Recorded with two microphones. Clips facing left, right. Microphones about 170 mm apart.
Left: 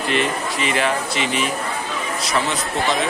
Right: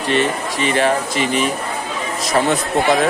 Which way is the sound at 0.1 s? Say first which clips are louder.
Right 4 dB; 35° right (ahead or behind).